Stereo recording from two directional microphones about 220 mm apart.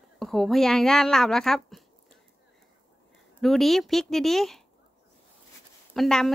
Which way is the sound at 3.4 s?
Centre (ahead or behind).